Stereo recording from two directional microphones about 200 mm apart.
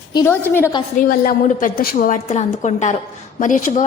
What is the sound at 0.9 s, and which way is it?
A woman's voice, 45° left (ahead or behind).